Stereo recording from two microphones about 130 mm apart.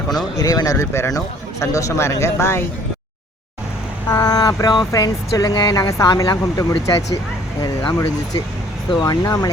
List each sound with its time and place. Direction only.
0.3 s a man's voice: 25° left (ahead or behind)
4.1 s a man's voice: 30° left (ahead or behind)
9.0 s a man's voice: 30° left (ahead or behind)